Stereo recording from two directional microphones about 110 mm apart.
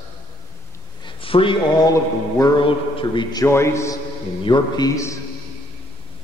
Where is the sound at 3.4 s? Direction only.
25° left (ahead or behind).